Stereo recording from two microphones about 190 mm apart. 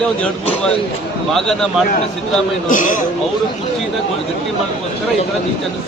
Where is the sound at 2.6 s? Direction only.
45° left (ahead or behind).